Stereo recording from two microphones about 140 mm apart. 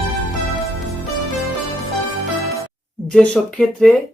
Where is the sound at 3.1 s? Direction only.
5° left (ahead or behind).